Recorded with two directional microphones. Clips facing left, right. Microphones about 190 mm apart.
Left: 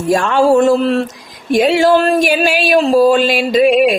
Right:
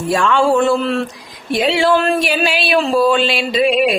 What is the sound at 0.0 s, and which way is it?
Speech, 45° left (ahead or behind).